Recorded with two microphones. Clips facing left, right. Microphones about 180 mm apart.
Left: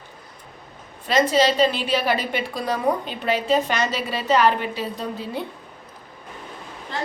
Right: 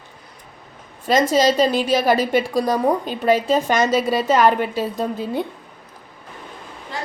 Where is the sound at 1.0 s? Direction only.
45° right (ahead or behind).